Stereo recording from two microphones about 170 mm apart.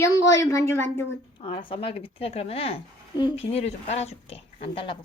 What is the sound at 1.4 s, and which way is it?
Speech, 30° left (ahead or behind).